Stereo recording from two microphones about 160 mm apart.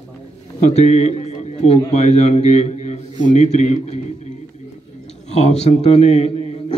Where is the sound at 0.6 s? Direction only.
45° left (ahead or behind).